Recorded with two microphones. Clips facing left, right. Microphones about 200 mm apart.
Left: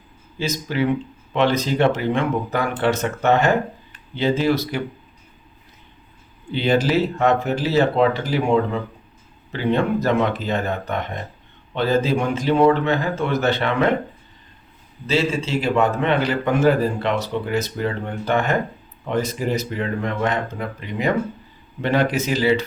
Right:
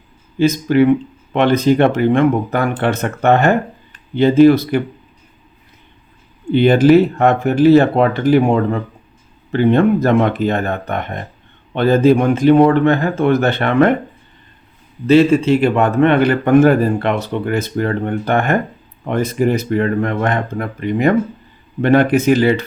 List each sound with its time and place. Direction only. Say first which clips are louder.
0.3 s a man's voice: right 11 dB; 55° right (ahead or behind)
6.5 s a man's voice: right 9 dB; 55° right (ahead or behind)
9.5 s a man's voice: right 8 dB; 55° right (ahead or behind)
15.0 s a man's voice: right 11 dB; 60° right (ahead or behind)